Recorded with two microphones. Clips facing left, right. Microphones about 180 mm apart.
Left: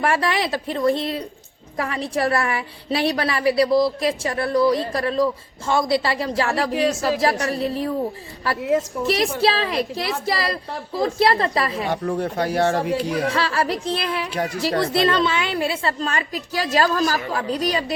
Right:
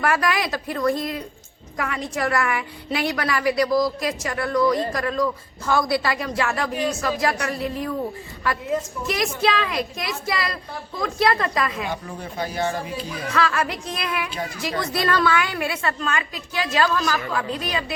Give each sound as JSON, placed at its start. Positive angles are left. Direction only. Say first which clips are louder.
{"t": 0.0, "sound": "a woman's voice", "louder": "left 1 dB", "side_deg": 30}
{"t": 9.0, "sound": "a woman's voice", "louder": "left 2 dB", "side_deg": 30}
{"t": 11.9, "sound": "speech", "louder": "left 8 dB", "side_deg": 70}
{"t": 13.2, "sound": "a woman's voice", "louder": "left 1 dB", "side_deg": 30}
{"t": 14.3, "sound": "speech", "louder": "left 6 dB", "side_deg": 70}
{"t": 14.6, "sound": "a woman's voice", "louder": "left 5 dB", "side_deg": 35}